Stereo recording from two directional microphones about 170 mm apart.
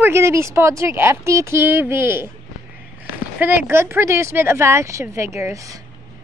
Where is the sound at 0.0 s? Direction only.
15° right (ahead or behind).